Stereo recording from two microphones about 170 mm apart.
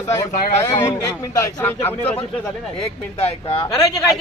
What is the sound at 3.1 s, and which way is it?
Speech, 35° left (ahead or behind).